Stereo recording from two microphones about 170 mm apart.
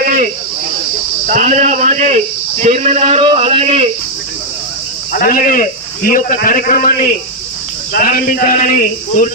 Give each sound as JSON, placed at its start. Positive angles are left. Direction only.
{"t": 1.2, "sound": "a man's voice", "side_deg": -50}
{"t": 5.1, "sound": "a man's voice", "side_deg": 55}